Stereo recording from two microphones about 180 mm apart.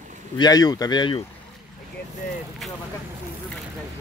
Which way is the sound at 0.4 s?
20° left (ahead or behind).